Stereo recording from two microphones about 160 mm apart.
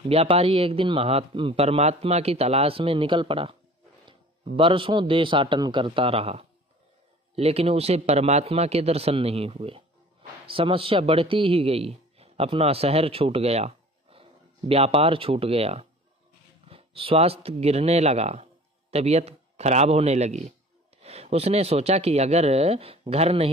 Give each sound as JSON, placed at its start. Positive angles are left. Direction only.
{"t": 0.1, "sound": "a man's voice", "side_deg": -40}
{"t": 4.6, "sound": "a man's voice", "side_deg": -35}